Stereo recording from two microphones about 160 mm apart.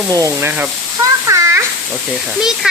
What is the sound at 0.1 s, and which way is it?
Speech, 20° right (ahead or behind).